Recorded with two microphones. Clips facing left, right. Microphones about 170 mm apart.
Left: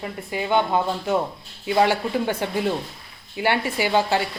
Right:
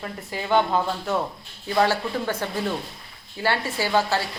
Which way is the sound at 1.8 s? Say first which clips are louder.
Left 2 dB; 15° left (ahead or behind).